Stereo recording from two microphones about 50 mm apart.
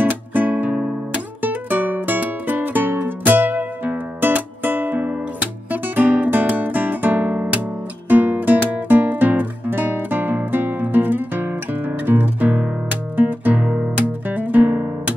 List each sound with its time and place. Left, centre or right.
0.0 s music: right